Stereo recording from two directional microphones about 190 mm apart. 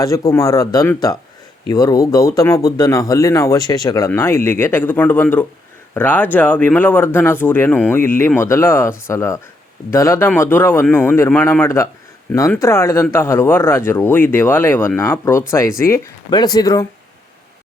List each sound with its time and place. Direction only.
0.0 s speech: 15° left (ahead or behind)